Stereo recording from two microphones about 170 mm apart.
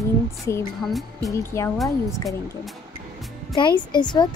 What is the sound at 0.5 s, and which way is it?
Speech, 15° left (ahead or behind).